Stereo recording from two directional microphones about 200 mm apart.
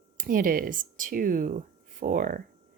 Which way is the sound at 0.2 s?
45° right (ahead or behind).